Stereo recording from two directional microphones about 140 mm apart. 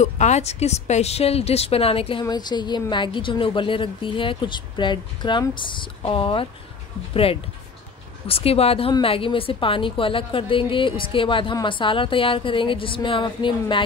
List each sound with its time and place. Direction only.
0.0 s speech: 55° left (ahead or behind)
2.2 s a woman's voice: 30° left (ahead or behind)
8.3 s a woman's voice: 45° left (ahead or behind)